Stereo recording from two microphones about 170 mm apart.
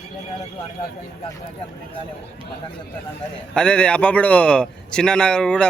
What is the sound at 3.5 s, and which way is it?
A man's voice, 5° left (ahead or behind).